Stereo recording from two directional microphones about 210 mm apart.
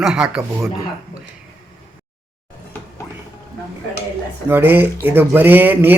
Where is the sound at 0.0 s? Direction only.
5° right (ahead or behind).